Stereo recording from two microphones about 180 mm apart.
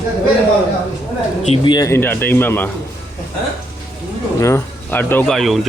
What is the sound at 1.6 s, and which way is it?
Speech, 20° left (ahead or behind).